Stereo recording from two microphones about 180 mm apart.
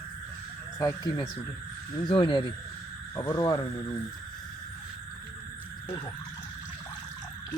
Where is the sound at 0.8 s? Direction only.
20° left (ahead or behind).